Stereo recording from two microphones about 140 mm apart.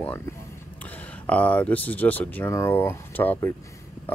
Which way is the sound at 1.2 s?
10° left (ahead or behind).